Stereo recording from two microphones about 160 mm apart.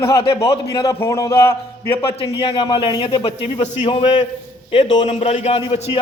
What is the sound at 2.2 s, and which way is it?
A man's voice, 35° left (ahead or behind).